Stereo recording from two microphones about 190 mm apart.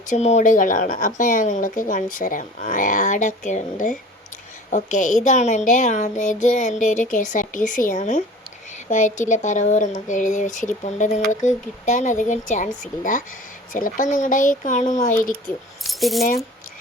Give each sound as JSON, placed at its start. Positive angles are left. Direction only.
{"t": 0.1, "sound": "a woman's voice", "side_deg": 35}
{"t": 15.8, "sound": "keys jangling", "side_deg": 0}